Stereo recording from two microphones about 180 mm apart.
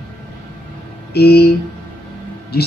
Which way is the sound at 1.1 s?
60° left (ahead or behind).